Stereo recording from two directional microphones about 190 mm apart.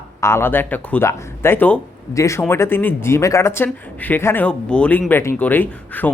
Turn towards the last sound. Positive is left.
turn(degrees=10)  # may be behind; listen again after turning